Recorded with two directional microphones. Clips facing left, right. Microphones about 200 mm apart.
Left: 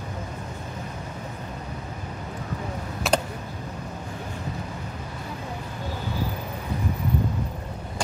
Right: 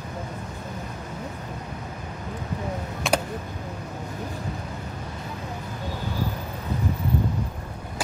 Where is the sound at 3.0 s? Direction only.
Centre (ahead or behind).